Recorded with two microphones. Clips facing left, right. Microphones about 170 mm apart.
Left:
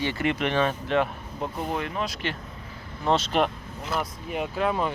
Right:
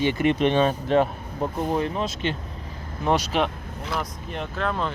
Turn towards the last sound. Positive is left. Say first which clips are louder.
# left 1 dB
turn(degrees=10)  # may be behind; listen again after turning